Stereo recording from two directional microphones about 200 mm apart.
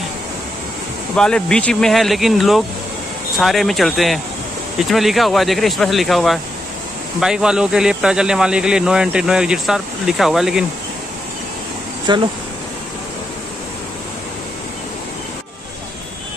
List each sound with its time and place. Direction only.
1.1 s speech: 5° left (ahead or behind)
12.1 s speech: 20° right (ahead or behind)